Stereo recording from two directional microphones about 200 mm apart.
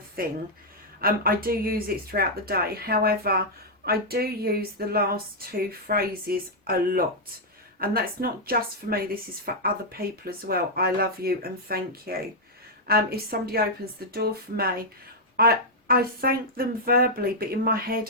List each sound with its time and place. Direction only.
0.2 s speech: 45° right (ahead or behind)